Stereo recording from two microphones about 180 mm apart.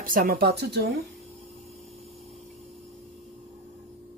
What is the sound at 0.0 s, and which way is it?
Speech, 50° right (ahead or behind).